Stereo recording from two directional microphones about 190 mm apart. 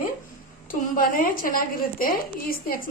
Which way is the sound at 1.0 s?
45° left (ahead or behind).